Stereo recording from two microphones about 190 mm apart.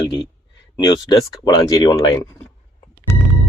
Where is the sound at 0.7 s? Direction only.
20° left (ahead or behind).